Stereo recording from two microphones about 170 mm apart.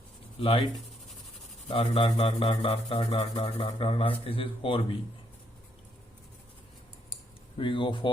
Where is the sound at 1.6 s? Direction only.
30° left (ahead or behind).